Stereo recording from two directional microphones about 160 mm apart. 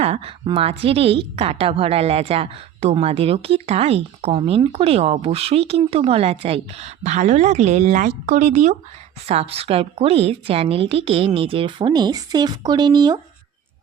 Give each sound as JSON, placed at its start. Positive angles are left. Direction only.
{"t": 0.0, "sound": "a woman's voice", "side_deg": -40}